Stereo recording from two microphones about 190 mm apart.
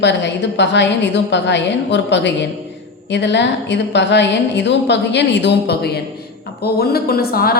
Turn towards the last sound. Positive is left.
turn(degrees=50)  # may be behind; listen again after turning